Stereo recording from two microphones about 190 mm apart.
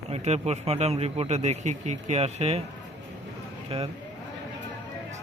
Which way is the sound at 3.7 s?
30° right (ahead or behind).